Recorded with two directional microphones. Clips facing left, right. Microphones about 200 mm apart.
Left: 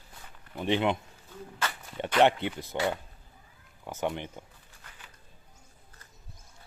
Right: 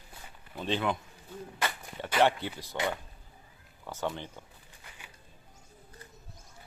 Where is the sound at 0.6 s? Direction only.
15° left (ahead or behind).